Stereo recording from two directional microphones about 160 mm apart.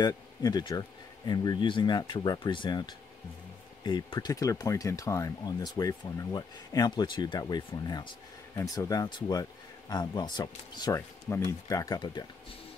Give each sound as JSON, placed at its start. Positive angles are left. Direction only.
{"t": 0.0, "sound": "speech", "side_deg": 25}
{"t": 11.0, "sound": "speech", "side_deg": 15}